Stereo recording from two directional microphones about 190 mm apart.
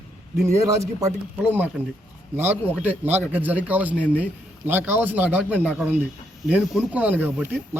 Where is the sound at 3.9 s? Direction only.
10° left (ahead or behind).